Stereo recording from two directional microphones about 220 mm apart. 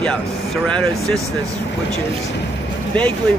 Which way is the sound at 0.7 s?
5° left (ahead or behind).